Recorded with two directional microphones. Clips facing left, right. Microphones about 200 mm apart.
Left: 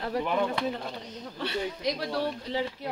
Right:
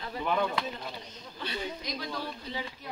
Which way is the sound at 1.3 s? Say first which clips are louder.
Left 4 dB; 75° left (ahead or behind).